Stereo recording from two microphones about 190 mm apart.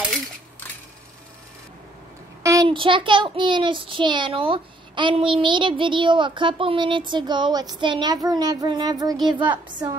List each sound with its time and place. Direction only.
2.4 s a child's voice: 20° right (ahead or behind)